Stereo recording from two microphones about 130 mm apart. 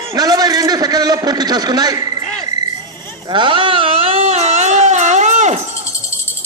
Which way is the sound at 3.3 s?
40° right (ahead or behind).